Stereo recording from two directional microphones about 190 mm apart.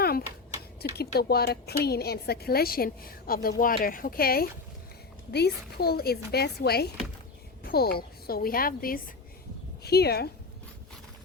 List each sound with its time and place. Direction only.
0.0 s typing: 55° left (ahead or behind)
0.8 s a woman's voice: 55° left (ahead or behind)